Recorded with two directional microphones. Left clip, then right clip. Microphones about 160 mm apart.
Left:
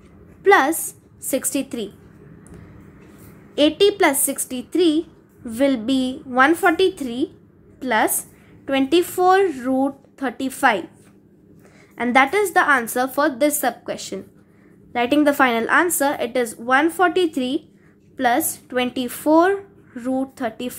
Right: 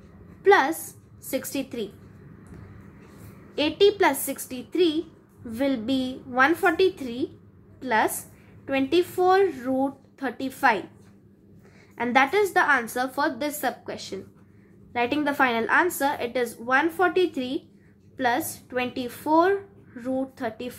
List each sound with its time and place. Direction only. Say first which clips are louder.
0.4 s a woman's voice: left 4 dB; 35° left (ahead or behind)
3.5 s a woman's voice: left 4 dB; 40° left (ahead or behind)
11.9 s a woman's voice: left 5 dB; 35° left (ahead or behind)